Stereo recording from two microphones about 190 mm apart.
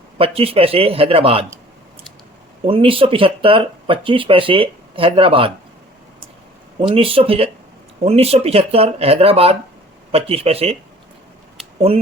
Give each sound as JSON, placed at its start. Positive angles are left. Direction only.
{"t": 0.2, "sound": "speech", "side_deg": -30}
{"t": 2.6, "sound": "speech", "side_deg": -30}
{"t": 6.8, "sound": "speech", "side_deg": -30}